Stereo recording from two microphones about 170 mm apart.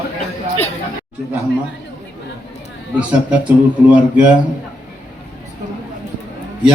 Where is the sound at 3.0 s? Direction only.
10° right (ahead or behind).